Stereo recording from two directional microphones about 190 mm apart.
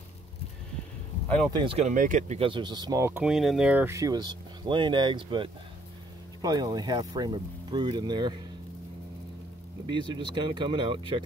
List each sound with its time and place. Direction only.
1.2 s a sound: 5° left (ahead or behind)
1.5 s speech: 25° right (ahead or behind)
9.8 s speech: 25° right (ahead or behind)